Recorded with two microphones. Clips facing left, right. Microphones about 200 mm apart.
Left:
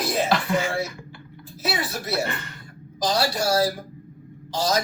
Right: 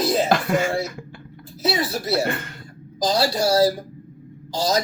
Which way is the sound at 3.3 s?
30° right (ahead or behind).